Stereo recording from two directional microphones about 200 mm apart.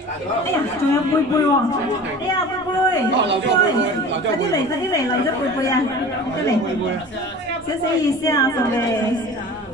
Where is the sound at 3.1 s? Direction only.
60° right (ahead or behind).